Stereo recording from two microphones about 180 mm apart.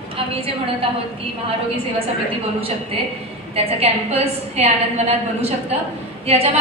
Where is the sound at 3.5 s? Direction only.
35° right (ahead or behind).